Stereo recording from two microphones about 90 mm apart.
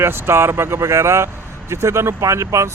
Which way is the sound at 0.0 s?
25° right (ahead or behind).